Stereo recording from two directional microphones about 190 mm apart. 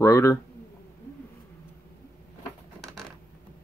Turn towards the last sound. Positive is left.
turn(degrees=0)  # may be behind; listen again after turning